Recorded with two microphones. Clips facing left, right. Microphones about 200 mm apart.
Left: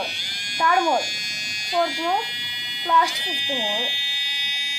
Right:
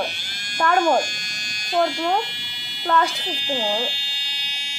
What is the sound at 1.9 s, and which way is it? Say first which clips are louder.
Speech: right 2 dB; 55° right (ahead or behind).